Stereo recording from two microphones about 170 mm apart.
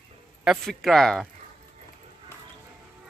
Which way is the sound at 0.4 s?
Centre (ahead or behind).